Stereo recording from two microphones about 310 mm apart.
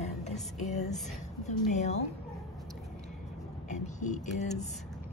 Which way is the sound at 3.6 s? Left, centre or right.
Left.